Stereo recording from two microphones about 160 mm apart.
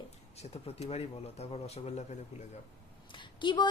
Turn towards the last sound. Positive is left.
turn(degrees=30)  # may be behind; listen again after turning